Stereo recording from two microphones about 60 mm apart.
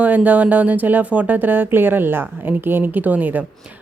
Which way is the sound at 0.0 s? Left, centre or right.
Right.